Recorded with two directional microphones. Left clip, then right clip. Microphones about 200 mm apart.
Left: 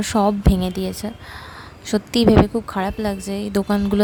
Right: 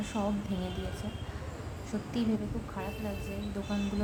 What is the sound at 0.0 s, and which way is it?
A woman's voice, 45° left (ahead or behind).